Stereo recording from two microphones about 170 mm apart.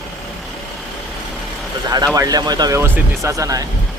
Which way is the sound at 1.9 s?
20° right (ahead or behind).